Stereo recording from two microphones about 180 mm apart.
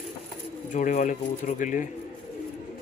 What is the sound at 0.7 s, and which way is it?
Speech, 45° left (ahead or behind).